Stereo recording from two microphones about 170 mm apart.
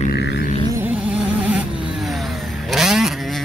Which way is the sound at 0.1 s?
80° left.